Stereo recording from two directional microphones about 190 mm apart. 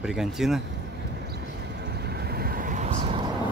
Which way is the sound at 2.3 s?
50° right (ahead or behind).